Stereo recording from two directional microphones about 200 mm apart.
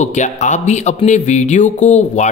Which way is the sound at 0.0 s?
35° left (ahead or behind).